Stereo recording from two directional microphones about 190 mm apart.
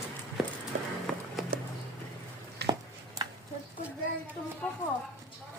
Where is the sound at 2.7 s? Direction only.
20° right (ahead or behind).